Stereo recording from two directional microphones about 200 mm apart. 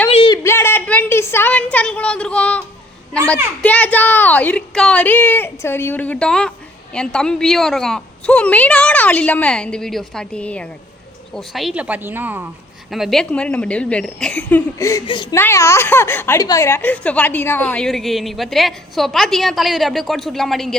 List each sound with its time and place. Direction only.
0.1 s a sound: 30° left (ahead or behind)
0.4 s a woman's voice: 10° left (ahead or behind)
15.4 s speech: 15° left (ahead or behind)